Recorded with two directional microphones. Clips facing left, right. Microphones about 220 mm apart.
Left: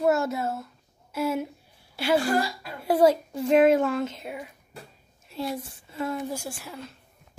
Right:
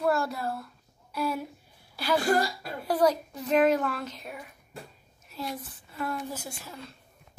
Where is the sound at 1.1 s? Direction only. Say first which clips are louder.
Left 4 dB; 25° left (ahead or behind).